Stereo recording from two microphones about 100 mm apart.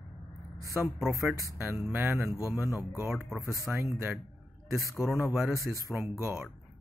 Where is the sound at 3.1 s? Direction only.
Centre (ahead or behind).